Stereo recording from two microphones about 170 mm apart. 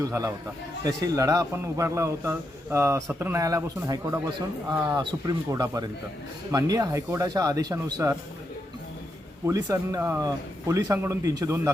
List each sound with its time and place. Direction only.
0.0 s a man's voice: 20° right (ahead or behind)
9.5 s a man's voice: 20° right (ahead or behind)